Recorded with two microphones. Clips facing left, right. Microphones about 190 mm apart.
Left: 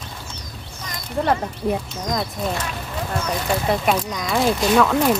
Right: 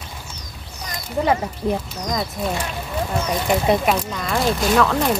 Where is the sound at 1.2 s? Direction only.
5° right (ahead or behind).